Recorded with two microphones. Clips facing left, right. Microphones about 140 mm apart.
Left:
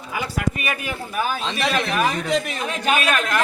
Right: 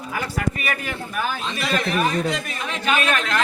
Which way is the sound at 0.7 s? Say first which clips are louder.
Even; 10° left (ahead or behind).